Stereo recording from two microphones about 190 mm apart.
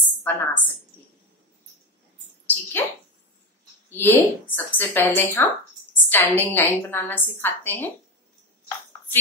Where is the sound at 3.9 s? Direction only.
10° left (ahead or behind).